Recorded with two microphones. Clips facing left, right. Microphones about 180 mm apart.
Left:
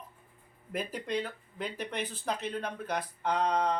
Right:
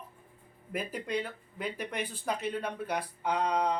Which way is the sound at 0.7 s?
5° right (ahead or behind).